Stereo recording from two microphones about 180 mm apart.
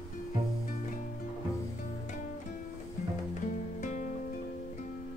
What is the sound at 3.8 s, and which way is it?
Music, 45° left (ahead or behind).